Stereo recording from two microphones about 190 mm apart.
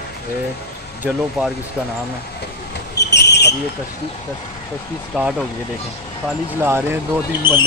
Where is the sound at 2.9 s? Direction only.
60° left (ahead or behind).